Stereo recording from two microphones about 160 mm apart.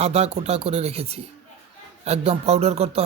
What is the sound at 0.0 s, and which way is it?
Speech, 40° right (ahead or behind).